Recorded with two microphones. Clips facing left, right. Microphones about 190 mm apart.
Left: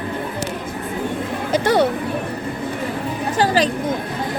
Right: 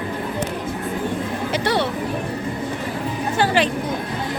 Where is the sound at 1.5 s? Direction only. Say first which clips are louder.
Left 6 dB; 45° left (ahead or behind).